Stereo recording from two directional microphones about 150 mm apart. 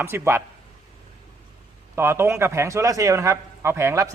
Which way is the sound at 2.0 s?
15° right (ahead or behind).